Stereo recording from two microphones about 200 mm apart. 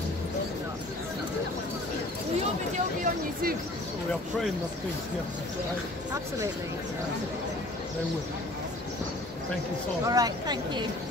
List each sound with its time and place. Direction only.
10.0 s speech: 20° right (ahead or behind)